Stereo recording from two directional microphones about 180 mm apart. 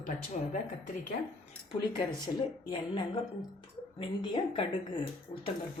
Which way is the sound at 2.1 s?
25° left (ahead or behind).